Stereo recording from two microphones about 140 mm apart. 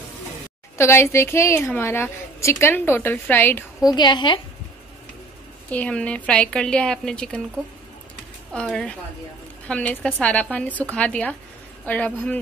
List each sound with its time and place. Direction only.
0.7 s a woman's voice: 20° left (ahead or behind)
3.8 s a woman's voice: 30° left (ahead or behind)
5.7 s a woman's voice: 10° left (ahead or behind)
8.5 s a woman's voice: 5° left (ahead or behind)